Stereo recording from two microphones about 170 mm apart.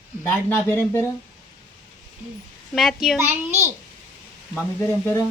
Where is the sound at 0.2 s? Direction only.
10° left (ahead or behind).